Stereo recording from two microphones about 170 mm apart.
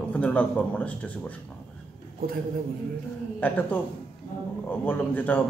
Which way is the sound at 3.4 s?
10° left (ahead or behind).